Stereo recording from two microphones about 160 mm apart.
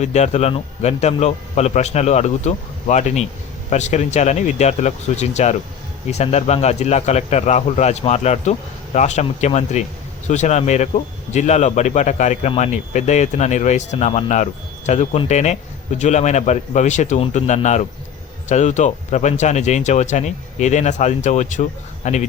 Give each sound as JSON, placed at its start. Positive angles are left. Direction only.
{"t": 0.0, "sound": "speech", "side_deg": 45}